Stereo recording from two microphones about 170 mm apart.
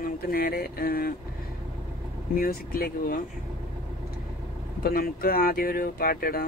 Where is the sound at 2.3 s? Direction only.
60° left (ahead or behind).